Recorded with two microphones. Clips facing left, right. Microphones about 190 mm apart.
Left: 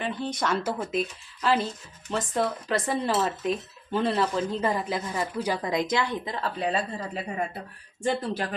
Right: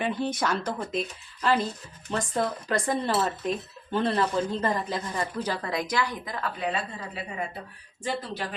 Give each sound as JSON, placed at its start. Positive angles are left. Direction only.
{"t": 0.0, "sound": "speech", "side_deg": -5}
{"t": 8.0, "sound": "speech", "side_deg": 50}